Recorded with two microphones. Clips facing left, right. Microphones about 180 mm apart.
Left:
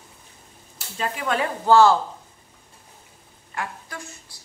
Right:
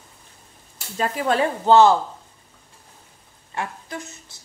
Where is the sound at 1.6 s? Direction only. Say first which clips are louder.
Right 1 dB; 20° right (ahead or behind).